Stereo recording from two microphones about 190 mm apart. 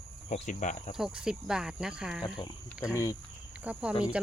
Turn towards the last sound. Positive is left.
turn(degrees=-5)  # may be behind; listen again after turning